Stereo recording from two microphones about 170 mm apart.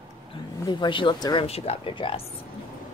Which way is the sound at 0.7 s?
25° left (ahead or behind).